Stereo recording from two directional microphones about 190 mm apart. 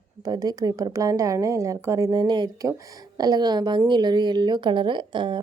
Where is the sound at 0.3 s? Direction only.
20° right (ahead or behind).